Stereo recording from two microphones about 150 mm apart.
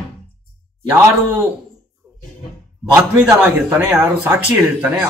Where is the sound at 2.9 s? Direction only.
10° right (ahead or behind).